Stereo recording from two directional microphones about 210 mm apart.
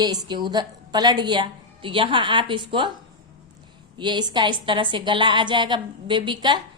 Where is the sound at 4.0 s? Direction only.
20° right (ahead or behind).